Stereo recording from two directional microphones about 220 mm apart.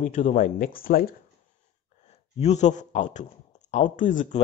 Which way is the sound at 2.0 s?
30° left (ahead or behind).